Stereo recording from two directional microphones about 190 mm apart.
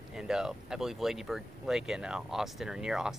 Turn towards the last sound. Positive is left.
turn(degrees=-5)  # may be behind; listen again after turning